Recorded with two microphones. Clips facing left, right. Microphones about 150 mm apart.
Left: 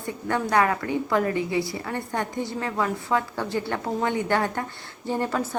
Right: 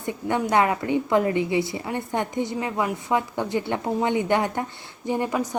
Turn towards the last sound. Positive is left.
turn(degrees=-15)  # may be behind; listen again after turning